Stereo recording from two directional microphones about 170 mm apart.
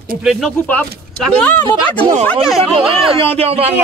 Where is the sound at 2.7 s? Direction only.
35° right (ahead or behind).